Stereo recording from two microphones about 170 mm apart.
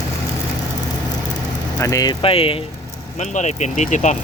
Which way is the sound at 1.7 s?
20° left (ahead or behind).